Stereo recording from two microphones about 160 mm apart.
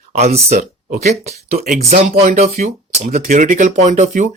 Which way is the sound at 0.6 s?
60° right (ahead or behind).